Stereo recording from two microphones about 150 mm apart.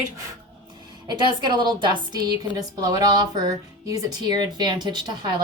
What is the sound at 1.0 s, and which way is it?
Speech, 30° right (ahead or behind).